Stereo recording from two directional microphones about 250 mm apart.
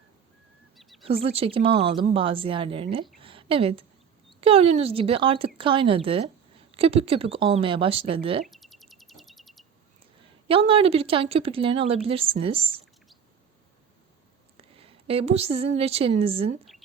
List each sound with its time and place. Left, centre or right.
0.8 s bird: centre
1.0 s speech: right
3.2 s a sound: right
4.4 s speech: right
8.4 s a sound: centre
10.5 s speech: right
14.8 s speech: right